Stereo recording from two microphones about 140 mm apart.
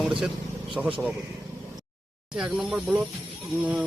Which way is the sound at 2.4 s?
5° right (ahead or behind).